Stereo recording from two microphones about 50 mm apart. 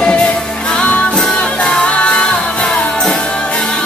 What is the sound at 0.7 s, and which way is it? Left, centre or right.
Music, left.